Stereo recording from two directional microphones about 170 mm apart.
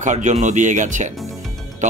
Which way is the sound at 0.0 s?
45° right (ahead or behind).